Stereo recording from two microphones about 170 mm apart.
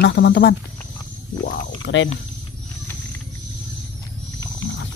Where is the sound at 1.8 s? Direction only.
90° left.